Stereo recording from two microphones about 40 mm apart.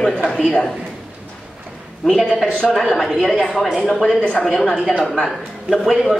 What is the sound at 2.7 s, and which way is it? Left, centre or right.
Speech, centre.